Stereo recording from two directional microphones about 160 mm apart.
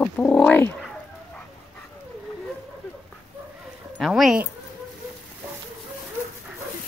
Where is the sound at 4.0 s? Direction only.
Centre (ahead or behind).